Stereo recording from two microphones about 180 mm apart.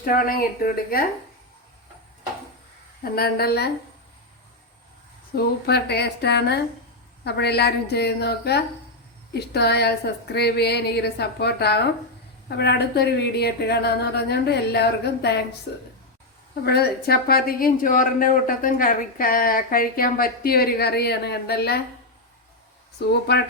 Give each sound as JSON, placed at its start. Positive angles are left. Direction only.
{"t": 0.0, "sound": "speech", "side_deg": 55}
{"t": 3.0, "sound": "a woman's voice", "side_deg": 60}
{"t": 5.6, "sound": "a woman's voice", "side_deg": 65}
{"t": 16.6, "sound": "a woman's voice", "side_deg": 60}
{"t": 23.0, "sound": "speech", "side_deg": 70}